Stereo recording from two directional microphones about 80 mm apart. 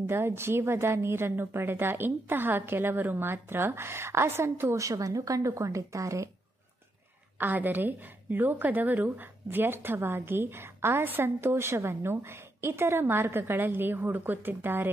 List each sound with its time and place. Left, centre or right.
0.0 s a woman's voice: right
7.3 s a woman's voice: right